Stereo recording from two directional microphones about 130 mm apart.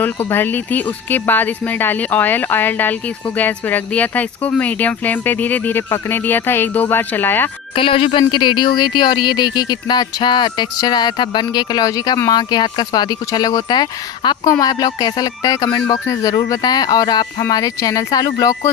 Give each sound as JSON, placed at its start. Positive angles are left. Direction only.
{"t": 0.0, "sound": "speech", "side_deg": 15}
{"t": 7.8, "sound": "speech", "side_deg": 45}